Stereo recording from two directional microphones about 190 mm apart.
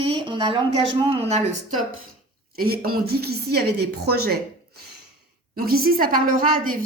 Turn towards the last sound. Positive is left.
turn(degrees=-45)  # may be behind; listen again after turning